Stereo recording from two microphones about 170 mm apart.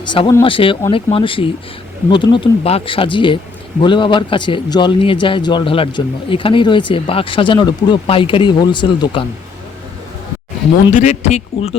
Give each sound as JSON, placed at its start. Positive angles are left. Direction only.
{"t": 0.0, "sound": "a man's voice", "side_deg": 30}
{"t": 10.9, "sound": "speech", "side_deg": 45}